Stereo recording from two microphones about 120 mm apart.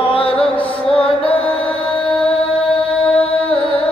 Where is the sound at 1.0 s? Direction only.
50° left (ahead or behind).